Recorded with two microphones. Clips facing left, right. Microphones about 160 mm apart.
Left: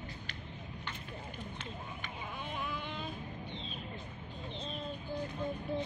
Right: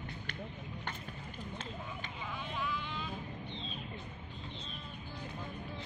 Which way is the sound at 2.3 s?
50° left (ahead or behind).